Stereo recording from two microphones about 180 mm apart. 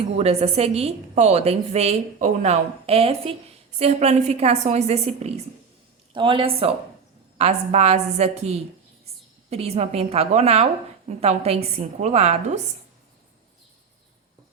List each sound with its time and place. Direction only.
0.2 s a woman's voice: 35° right (ahead or behind)